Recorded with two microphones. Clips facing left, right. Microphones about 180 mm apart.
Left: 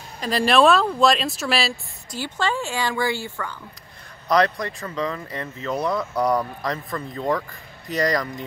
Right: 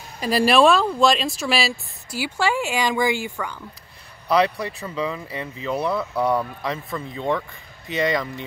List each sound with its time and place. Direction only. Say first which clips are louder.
0.2 s speech: right 1 dB; 5° right (ahead or behind)